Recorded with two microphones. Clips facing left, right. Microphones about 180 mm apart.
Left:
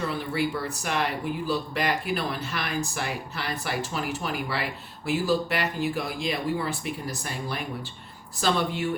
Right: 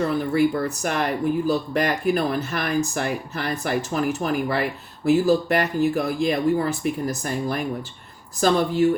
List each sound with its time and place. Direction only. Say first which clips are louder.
0.0 s speech: right 8 dB; 45° right (ahead or behind)